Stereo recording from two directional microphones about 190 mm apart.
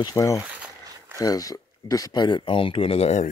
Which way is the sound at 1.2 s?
20° left (ahead or behind).